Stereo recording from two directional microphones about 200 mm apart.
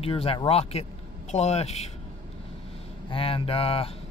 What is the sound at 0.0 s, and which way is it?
Speech, 30° left (ahead or behind).